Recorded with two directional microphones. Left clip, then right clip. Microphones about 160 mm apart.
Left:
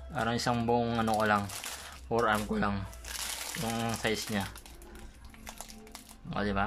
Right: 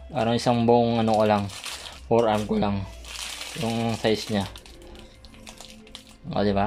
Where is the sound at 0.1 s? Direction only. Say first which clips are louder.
Right 8 dB; 25° right (ahead or behind).